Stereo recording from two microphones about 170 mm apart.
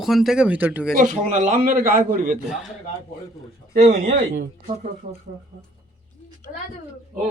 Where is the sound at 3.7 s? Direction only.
55° right (ahead or behind).